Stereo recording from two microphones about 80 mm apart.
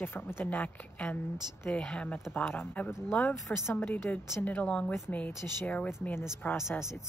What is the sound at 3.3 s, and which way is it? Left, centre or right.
Speech, left.